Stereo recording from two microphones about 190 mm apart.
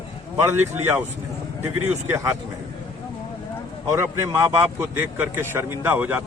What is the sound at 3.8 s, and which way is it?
A man's voice, 15° right (ahead or behind).